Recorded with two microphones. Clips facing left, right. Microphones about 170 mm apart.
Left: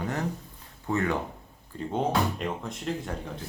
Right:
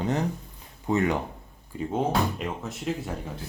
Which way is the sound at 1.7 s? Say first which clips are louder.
Right 1 dB; 5° right (ahead or behind).